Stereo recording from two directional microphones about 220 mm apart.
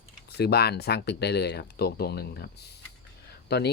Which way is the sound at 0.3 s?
45° left (ahead or behind).